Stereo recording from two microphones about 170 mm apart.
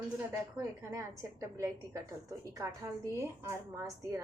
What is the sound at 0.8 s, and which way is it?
A woman's voice, 15° right (ahead or behind).